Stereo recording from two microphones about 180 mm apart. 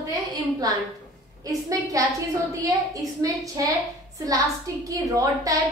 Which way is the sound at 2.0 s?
20° right (ahead or behind).